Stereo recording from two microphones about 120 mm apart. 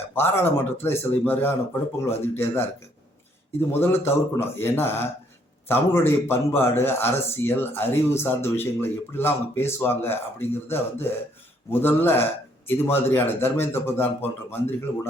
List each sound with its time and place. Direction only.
0.1 s a man's voice: 20° left (ahead or behind)
3.7 s a man's voice: 20° left (ahead or behind)